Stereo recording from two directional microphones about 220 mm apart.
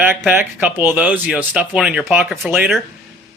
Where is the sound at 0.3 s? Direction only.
10° right (ahead or behind).